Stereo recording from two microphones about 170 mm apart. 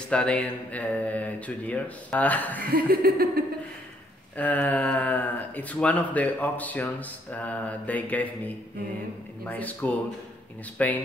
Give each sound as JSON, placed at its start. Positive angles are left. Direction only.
{"t": 0.1, "sound": "speech", "side_deg": 5}
{"t": 2.7, "sound": "a sound", "side_deg": -60}
{"t": 4.4, "sound": "speech", "side_deg": 10}
{"t": 9.4, "sound": "speech", "side_deg": 10}